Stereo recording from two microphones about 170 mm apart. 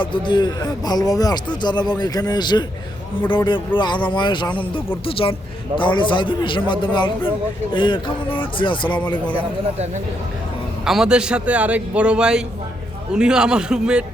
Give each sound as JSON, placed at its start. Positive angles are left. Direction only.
{"t": 0.0, "sound": "speech", "side_deg": 30}
{"t": 10.8, "sound": "speech", "side_deg": -5}